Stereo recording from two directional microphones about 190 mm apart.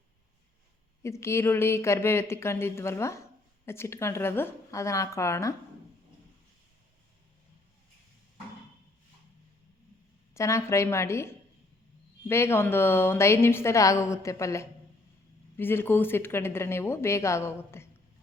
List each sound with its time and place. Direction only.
1.0 s a woman's voice: 15° left (ahead or behind)
10.3 s a woman's voice: 15° left (ahead or behind)